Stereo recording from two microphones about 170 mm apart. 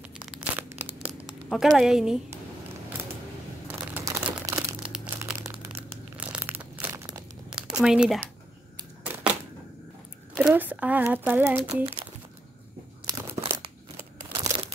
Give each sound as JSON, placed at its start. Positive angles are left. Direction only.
{"t": 0.1, "sound": "tearing", "side_deg": -5}
{"t": 1.0, "sound": "a sound", "side_deg": 0}
{"t": 4.0, "sound": "crumpling", "side_deg": -20}
{"t": 7.4, "sound": "a sound", "side_deg": -5}
{"t": 7.8, "sound": "speech", "side_deg": -5}
{"t": 9.0, "sound": "a sound", "side_deg": -10}
{"t": 10.3, "sound": "speech", "side_deg": -5}
{"t": 11.6, "sound": "speech", "side_deg": -30}
{"t": 13.0, "sound": "crumpling", "side_deg": -15}
{"t": 14.5, "sound": "crumpling", "side_deg": -15}